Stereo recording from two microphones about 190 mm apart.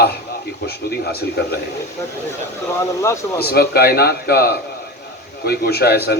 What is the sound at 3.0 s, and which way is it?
Speech, 15° left (ahead or behind).